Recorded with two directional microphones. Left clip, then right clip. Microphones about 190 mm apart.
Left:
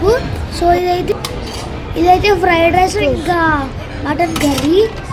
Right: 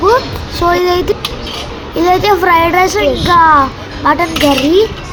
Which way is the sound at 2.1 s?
70° right (ahead or behind).